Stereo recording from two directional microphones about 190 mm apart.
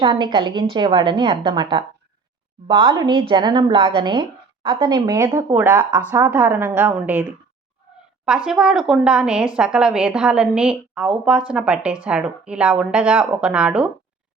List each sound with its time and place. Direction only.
0.0 s a woman's voice: 25° right (ahead or behind); by 13.9 s 5° right (ahead or behind)